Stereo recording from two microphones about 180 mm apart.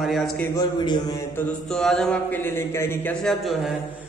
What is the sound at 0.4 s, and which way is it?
Speech, 20° left (ahead or behind).